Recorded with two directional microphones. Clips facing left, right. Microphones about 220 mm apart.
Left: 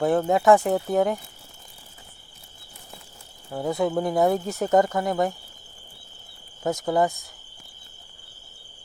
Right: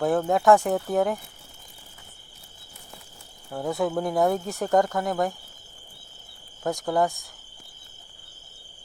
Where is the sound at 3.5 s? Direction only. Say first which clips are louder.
Left 2 dB; centre (ahead or behind).